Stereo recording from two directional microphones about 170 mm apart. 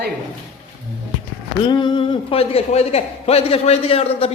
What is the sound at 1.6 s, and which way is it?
A man's voice, 25° left (ahead or behind).